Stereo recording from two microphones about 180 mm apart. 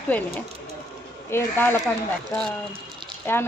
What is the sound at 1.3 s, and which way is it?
Speech, 10° left (ahead or behind).